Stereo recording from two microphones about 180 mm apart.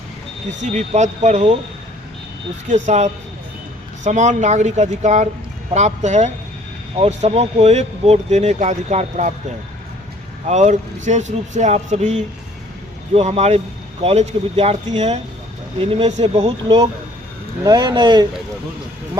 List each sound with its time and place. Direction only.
0.6 s speech: 40° right (ahead or behind)
2.6 s speech: 40° right (ahead or behind)
10.4 s speech: 40° right (ahead or behind)